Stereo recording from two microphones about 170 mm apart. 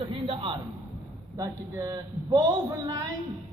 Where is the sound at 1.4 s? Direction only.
20° right (ahead or behind).